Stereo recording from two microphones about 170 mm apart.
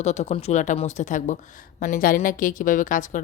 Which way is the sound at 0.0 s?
40° left (ahead or behind).